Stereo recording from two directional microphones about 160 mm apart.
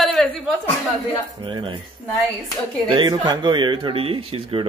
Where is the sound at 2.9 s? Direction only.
25° right (ahead or behind).